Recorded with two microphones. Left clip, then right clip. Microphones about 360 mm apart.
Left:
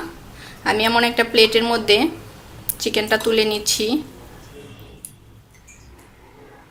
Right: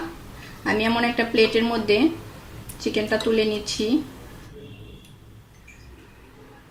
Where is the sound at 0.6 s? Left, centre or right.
Left.